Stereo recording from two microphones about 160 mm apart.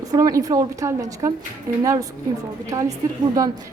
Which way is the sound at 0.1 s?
20° right (ahead or behind).